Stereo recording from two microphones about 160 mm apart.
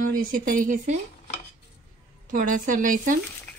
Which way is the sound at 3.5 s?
10° left (ahead or behind).